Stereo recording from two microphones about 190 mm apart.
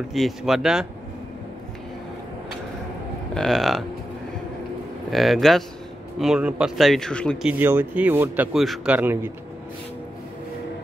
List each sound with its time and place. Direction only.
0.1 s speech: centre (ahead or behind)
3.3 s speech: centre (ahead or behind)
5.1 s speech: centre (ahead or behind)
7.5 s speech: 10° right (ahead or behind)